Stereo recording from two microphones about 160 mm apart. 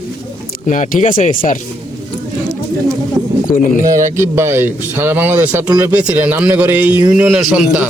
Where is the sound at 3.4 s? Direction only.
55° left (ahead or behind).